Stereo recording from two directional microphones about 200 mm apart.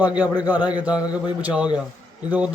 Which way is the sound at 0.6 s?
20° left (ahead or behind).